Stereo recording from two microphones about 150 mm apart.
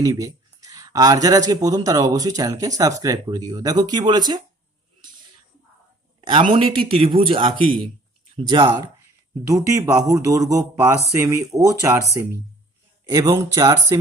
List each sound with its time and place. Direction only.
0.0 s speech: 20° right (ahead or behind)
6.5 s speech: 35° right (ahead or behind)
9.5 s speech: 25° right (ahead or behind)